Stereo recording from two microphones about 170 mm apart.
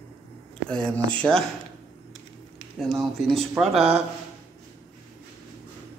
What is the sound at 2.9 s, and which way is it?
Speech, centre (ahead or behind).